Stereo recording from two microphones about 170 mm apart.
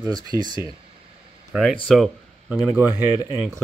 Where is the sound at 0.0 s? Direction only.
25° right (ahead or behind).